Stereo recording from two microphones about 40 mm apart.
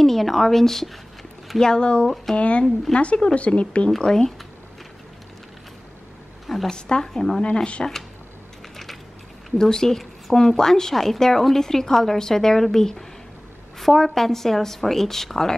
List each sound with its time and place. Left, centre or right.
0.0 s a woman's voice: centre
1.6 s speech: left
4.0 s a woman's voice: centre
6.4 s a woman's voice: centre
6.7 s a woman's voice: centre
9.6 s a woman's voice: centre